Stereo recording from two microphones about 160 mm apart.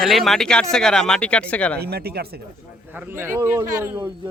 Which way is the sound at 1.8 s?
80° right.